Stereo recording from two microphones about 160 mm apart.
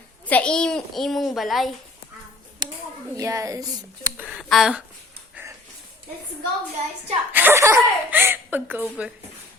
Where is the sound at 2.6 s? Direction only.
25° right (ahead or behind).